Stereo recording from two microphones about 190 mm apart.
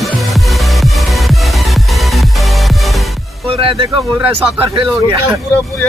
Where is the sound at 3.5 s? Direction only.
25° right (ahead or behind).